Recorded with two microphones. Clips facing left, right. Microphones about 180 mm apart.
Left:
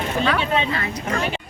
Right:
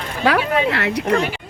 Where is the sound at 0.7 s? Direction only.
75° right (ahead or behind).